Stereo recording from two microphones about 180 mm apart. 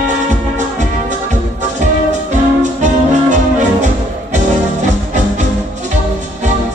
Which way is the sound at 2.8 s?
40° right (ahead or behind).